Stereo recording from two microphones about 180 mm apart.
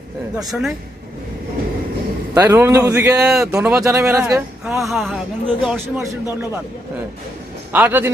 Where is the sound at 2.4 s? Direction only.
15° right (ahead or behind).